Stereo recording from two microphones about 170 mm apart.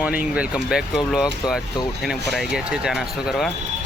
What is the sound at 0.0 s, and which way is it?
Speech, 10° right (ahead or behind).